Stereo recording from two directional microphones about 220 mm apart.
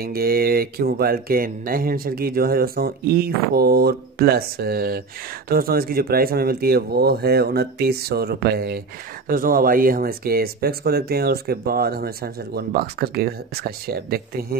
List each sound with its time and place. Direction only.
0.0 s speech: 45° right (ahead or behind)